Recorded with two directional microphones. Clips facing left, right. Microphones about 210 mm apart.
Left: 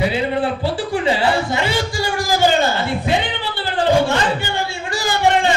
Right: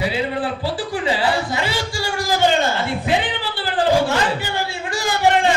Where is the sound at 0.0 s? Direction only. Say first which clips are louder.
Left 3 dB; 25° left (ahead or behind).